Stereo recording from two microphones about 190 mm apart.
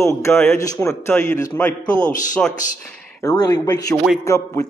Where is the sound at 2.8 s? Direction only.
5° left (ahead or behind).